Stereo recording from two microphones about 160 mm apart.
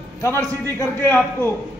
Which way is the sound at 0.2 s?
15° left (ahead or behind).